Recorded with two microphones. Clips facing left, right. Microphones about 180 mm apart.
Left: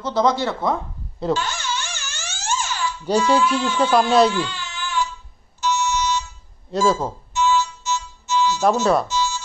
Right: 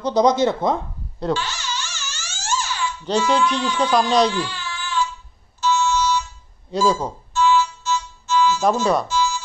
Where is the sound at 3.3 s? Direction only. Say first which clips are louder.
Left 1 dB; 5° left (ahead or behind).